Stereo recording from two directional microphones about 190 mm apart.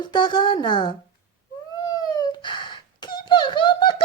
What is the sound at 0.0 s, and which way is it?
Speech, 25° left (ahead or behind).